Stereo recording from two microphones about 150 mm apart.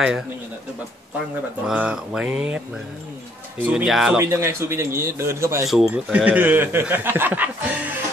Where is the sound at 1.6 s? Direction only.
5° right (ahead or behind).